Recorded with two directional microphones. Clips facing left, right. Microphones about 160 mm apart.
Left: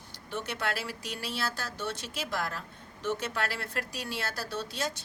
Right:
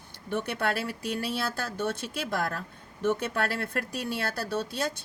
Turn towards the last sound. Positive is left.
turn(degrees=-55)  # may be behind; listen again after turning